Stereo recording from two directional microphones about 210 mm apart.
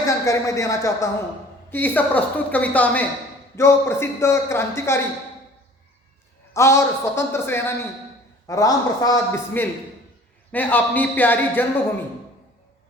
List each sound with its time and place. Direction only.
0.0 s a man's voice: 15° left (ahead or behind)
6.5 s a man's voice: 15° left (ahead or behind)